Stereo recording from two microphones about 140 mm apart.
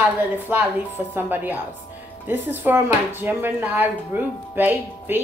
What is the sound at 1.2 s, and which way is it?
A woman's voice, 15° right (ahead or behind).